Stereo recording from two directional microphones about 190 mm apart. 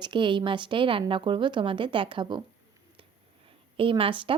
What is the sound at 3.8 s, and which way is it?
Speech, 30° right (ahead or behind).